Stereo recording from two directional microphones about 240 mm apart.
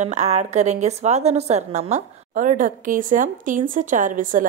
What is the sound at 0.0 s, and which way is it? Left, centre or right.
A woman's voice, right.